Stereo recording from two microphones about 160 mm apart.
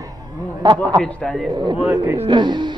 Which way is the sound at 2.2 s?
30° right (ahead or behind).